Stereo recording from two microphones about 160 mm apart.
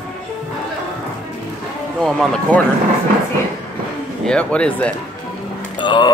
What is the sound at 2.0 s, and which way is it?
Speech, 5° left (ahead or behind).